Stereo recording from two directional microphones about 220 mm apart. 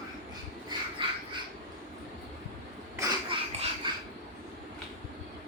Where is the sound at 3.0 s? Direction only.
20° right (ahead or behind).